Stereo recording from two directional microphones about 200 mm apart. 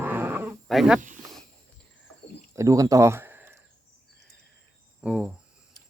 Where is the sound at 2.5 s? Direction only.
15° right (ahead or behind).